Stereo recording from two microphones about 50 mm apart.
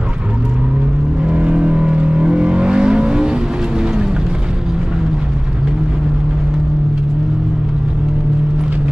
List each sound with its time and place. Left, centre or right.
1.2 s vehicle: right